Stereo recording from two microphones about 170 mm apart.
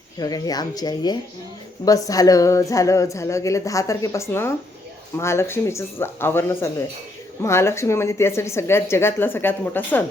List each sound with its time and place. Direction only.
0.2 s a woman's voice: 20° left (ahead or behind)